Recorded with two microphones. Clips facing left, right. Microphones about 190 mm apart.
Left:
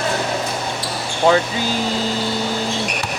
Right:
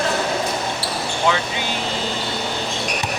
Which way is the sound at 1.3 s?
40° left (ahead or behind).